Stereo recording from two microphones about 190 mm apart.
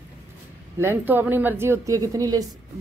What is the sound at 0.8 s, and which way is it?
Speech, 10° right (ahead or behind).